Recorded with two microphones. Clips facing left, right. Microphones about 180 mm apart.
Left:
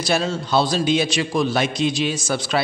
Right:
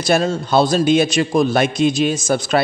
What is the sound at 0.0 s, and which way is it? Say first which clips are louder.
A man's voice: right 5 dB; 50° right (ahead or behind).